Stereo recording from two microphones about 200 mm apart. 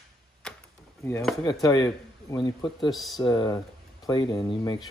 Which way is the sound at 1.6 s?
20° left (ahead or behind).